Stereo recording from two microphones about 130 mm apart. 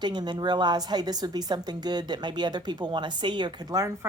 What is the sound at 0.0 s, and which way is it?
A woman's voice, 35° right (ahead or behind).